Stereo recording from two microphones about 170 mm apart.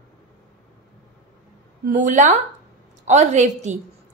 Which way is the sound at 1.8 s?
50° right (ahead or behind).